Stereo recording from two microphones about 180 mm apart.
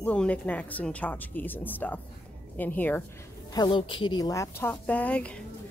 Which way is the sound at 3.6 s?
30° left (ahead or behind).